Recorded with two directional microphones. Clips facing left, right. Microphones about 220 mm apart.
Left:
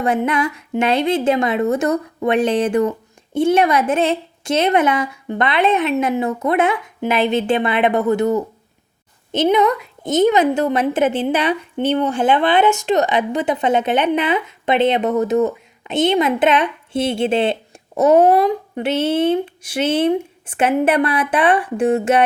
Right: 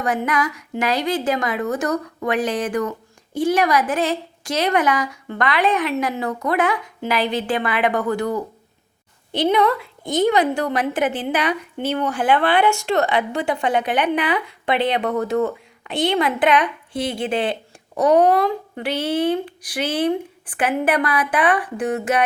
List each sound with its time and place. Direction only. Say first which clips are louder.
0.0 s a woman's voice: left 4 dB; 25° left (ahead or behind)